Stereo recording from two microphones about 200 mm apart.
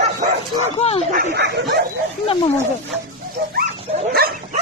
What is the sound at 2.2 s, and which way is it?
Speech, 25° left (ahead or behind).